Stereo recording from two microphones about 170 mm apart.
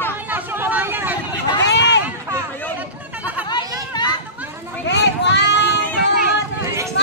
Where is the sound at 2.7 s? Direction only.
10° right (ahead or behind).